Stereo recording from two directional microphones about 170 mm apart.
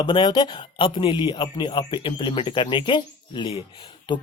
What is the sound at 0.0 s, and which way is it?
Speech, 25° left (ahead or behind).